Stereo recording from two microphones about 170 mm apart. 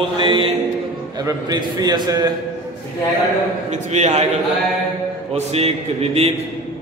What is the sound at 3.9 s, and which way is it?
Speech, 40° right (ahead or behind).